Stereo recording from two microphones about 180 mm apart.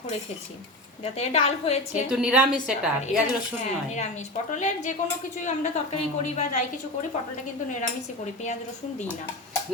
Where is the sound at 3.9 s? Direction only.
40° left (ahead or behind).